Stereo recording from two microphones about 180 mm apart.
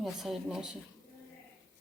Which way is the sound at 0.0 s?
Centre (ahead or behind).